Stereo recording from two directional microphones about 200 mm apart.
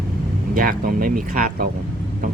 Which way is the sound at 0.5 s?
45° right (ahead or behind).